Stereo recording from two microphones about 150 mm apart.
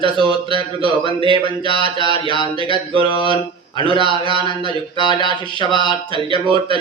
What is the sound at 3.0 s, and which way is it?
Speech, 35° left (ahead or behind).